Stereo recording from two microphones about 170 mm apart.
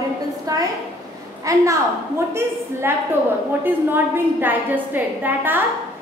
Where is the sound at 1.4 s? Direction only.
20° right (ahead or behind).